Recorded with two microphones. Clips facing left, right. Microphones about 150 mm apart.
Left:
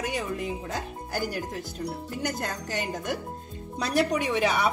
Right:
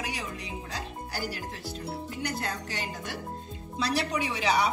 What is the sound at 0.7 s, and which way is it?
Speech, 50° left (ahead or behind).